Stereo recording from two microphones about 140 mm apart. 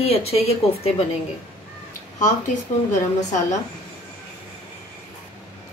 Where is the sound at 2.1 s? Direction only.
60° left (ahead or behind).